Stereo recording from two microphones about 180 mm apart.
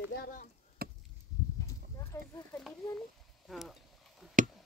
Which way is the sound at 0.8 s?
60° right (ahead or behind).